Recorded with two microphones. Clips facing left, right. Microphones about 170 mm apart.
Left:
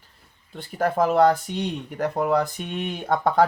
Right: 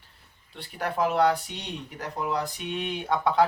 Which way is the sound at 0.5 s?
45° left (ahead or behind).